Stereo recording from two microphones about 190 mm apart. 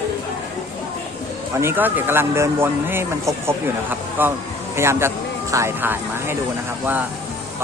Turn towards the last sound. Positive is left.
turn(degrees=-10)  # may be behind; listen again after turning